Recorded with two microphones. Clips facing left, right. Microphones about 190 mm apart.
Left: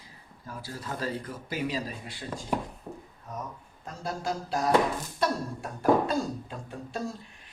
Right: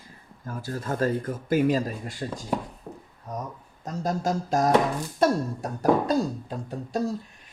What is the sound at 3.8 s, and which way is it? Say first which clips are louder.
Speech: right 7 dB; 40° right (ahead or behind).